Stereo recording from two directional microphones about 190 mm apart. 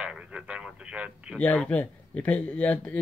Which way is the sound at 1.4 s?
5° left (ahead or behind).